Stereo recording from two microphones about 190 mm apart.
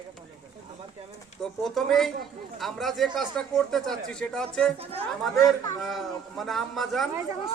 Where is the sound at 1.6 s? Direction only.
Centre (ahead or behind).